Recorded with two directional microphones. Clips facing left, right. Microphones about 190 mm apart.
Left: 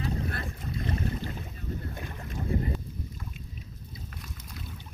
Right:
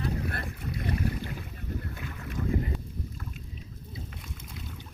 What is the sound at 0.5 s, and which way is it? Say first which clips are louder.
Boat: even; 25° left (ahead or behind).